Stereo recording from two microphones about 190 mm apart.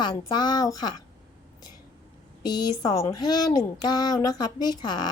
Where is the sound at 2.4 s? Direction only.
20° left (ahead or behind).